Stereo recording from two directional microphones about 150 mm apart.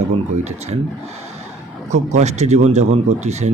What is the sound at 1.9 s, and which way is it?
Speech, 50° right (ahead or behind).